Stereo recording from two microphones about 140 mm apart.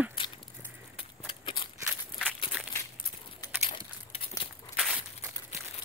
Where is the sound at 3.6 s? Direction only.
40° left (ahead or behind).